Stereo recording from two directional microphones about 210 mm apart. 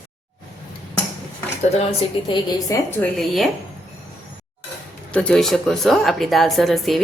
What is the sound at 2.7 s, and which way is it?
Speech, 15° left (ahead or behind).